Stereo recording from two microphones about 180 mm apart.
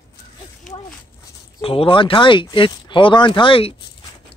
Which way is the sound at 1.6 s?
30° left (ahead or behind).